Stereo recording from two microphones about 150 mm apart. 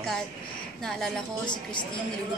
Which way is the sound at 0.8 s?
5° left (ahead or behind).